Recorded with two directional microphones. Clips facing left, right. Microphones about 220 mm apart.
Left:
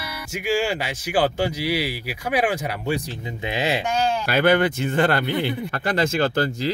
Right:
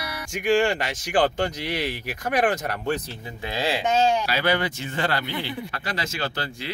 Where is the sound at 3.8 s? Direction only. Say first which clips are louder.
Right 2 dB; 20° right (ahead or behind).